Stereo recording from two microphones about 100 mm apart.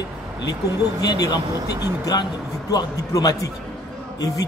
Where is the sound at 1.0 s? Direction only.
40° left (ahead or behind).